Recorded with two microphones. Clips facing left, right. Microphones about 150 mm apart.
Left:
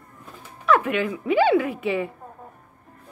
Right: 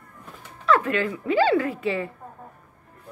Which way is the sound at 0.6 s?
15° left (ahead or behind).